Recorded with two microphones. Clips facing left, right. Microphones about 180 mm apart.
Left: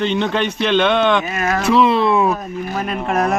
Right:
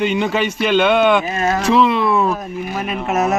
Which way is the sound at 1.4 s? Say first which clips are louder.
Right 1 dB; 30° right (ahead or behind).